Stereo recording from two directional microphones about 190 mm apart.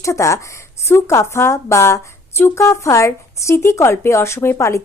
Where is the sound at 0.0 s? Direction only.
15° left (ahead or behind).